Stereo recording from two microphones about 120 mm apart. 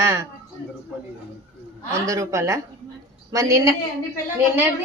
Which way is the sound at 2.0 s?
25° right (ahead or behind).